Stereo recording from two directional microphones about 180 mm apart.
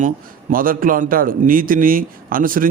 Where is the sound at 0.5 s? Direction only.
50° right (ahead or behind).